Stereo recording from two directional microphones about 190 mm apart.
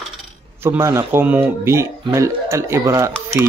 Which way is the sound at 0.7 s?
15° right (ahead or behind).